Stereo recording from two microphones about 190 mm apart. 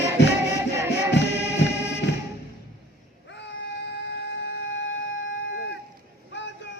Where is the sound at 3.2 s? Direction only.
70° left (ahead or behind).